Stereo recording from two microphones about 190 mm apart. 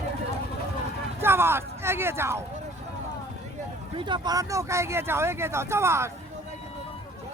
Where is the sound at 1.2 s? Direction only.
10° right (ahead or behind).